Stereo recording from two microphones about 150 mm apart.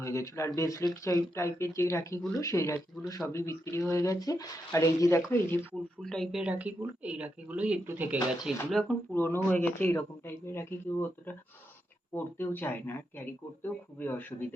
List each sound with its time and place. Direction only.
0.0 s speech: 20° left (ahead or behind)
6.0 s speech: 5° left (ahead or behind)
8.8 s speech: 5° left (ahead or behind)
12.1 s speech: 15° left (ahead or behind)